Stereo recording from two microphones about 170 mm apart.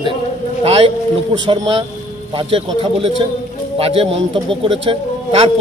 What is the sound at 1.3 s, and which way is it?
Speech, 30° right (ahead or behind).